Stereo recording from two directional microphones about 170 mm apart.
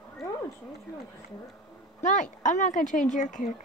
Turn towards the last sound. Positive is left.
turn(degrees=50)  # may be behind; listen again after turning